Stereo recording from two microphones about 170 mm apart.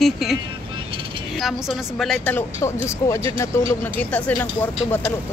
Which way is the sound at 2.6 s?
15° left (ahead or behind).